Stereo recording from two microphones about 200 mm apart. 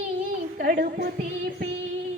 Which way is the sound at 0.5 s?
45° right (ahead or behind).